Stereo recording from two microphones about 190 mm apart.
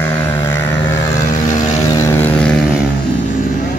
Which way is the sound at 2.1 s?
10° left (ahead or behind).